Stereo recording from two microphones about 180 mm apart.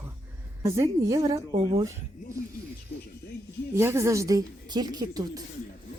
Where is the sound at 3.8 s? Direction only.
15° right (ahead or behind).